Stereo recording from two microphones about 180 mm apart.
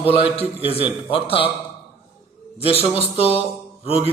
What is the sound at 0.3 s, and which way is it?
Speech, 30° left (ahead or behind).